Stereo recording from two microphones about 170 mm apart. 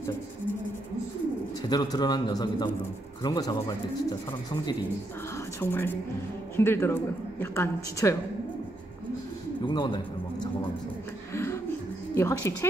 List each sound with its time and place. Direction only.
1.7 s a man's voice: 25° left (ahead or behind)
5.6 s a woman's voice: 15° left (ahead or behind)
9.7 s a man's voice: 30° left (ahead or behind)
11.3 s a sound: 15° left (ahead or behind)
12.2 s a woman's voice: 15° left (ahead or behind)